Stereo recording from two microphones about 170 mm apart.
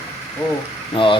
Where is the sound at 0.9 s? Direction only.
30° left (ahead or behind).